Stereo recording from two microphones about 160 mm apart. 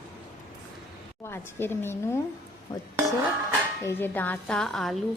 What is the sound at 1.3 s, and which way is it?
Speech, 15° left (ahead or behind).